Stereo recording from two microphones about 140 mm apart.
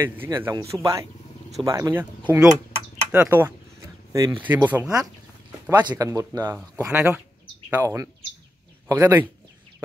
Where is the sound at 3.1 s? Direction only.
15° right (ahead or behind).